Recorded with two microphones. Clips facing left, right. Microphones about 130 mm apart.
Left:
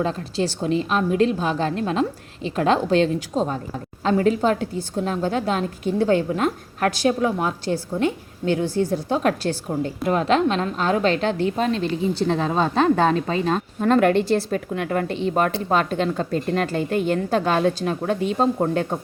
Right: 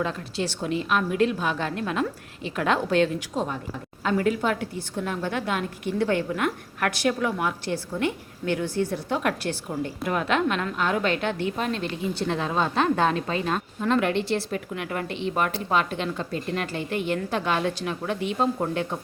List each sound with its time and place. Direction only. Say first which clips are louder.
0.0 s a woman's voice: left 5 dB; 35° left (ahead or behind)